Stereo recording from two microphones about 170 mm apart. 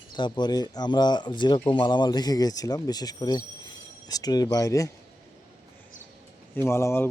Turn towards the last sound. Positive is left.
turn(degrees=15)  # may be behind; listen again after turning